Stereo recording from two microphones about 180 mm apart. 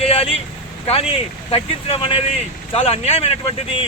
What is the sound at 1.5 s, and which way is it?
Speech, 30° left (ahead or behind).